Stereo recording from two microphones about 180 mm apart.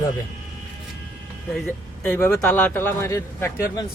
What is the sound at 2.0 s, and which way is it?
Speech, 15° left (ahead or behind).